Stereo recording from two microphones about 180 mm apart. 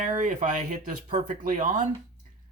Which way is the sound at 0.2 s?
45° right (ahead or behind).